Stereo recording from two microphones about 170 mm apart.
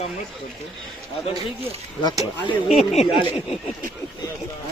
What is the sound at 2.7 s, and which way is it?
Speech, 40° left (ahead or behind).